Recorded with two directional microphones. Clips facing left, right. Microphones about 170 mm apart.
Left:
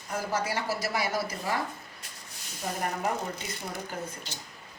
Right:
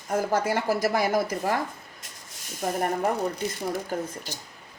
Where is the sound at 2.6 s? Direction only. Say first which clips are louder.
Right 7 dB; 50° right (ahead or behind).